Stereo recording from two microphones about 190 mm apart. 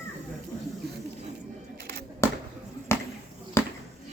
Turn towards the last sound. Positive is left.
turn(degrees=15)  # may be behind; listen again after turning